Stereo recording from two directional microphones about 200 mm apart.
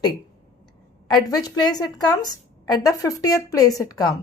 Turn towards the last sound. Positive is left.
turn(degrees=15)  # may be behind; listen again after turning